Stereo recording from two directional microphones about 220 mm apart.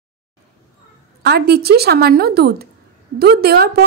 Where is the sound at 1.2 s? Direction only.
45° right (ahead or behind).